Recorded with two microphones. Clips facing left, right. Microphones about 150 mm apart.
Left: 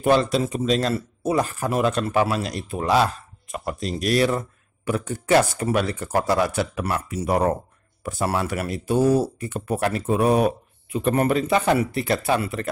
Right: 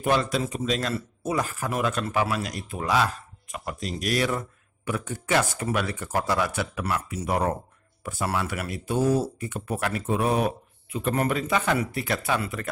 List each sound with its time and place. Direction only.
0.0 s speech: 30° left (ahead or behind)